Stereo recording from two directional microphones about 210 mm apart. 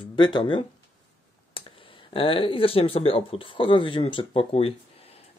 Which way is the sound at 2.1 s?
25° left (ahead or behind).